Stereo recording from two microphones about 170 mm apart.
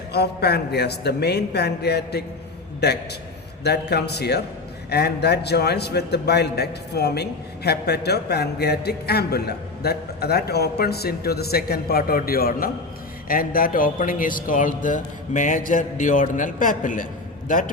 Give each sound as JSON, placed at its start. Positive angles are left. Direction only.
{"t": 0.1, "sound": "a man's voice", "side_deg": 75}